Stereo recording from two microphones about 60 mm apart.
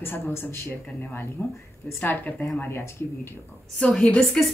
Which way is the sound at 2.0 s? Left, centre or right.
Left.